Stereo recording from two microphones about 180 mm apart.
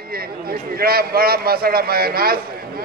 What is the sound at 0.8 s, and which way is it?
A man's voice, 55° right (ahead or behind).